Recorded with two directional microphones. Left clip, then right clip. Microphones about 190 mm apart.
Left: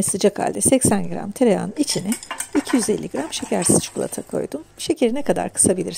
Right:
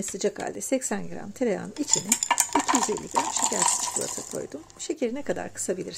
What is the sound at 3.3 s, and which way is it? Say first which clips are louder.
Speech: left 4 dB; 40° left (ahead or behind).